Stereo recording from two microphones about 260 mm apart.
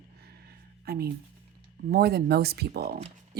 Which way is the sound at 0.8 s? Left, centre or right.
Right.